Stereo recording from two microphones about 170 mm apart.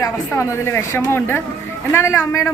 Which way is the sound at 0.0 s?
15° left (ahead or behind).